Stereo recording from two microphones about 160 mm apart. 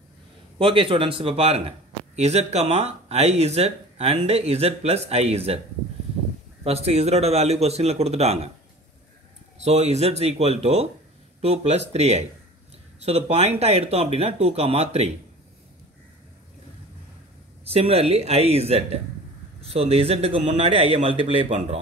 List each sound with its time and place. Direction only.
0.6 s a man's voice: 35° right (ahead or behind)
6.6 s a man's voice: 40° right (ahead or behind)
9.6 s a man's voice: 45° right (ahead or behind)
17.6 s a man's voice: 40° right (ahead or behind)